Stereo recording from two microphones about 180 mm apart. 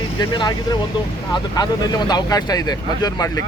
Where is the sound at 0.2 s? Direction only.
25° left (ahead or behind).